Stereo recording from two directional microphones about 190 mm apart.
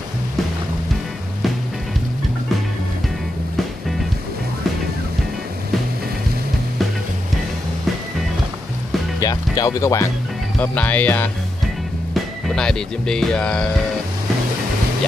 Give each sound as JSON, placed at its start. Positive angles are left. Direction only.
{"t": 9.2, "sound": "speech", "side_deg": 20}